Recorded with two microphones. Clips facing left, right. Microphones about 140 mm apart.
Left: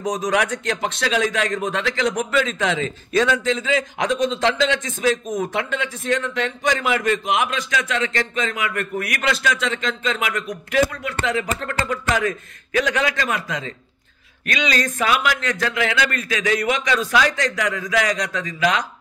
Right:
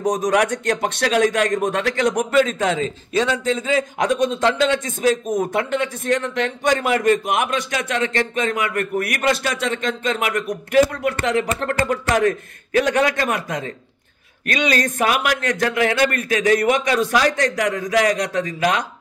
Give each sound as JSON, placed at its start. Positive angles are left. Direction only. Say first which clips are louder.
{"t": 0.0, "sound": "a man's voice", "louder": "right 3 dB", "side_deg": -60}
{"t": 3.1, "sound": "a man's voice", "louder": "left 2 dB", "side_deg": -25}
{"t": 3.4, "sound": "a man's voice", "louder": "right 1 dB", "side_deg": -40}
{"t": 4.7, "sound": "speech", "louder": "right 2 dB", "side_deg": -35}
{"t": 5.5, "sound": "a man's voice", "louder": "right 4 dB", "side_deg": -55}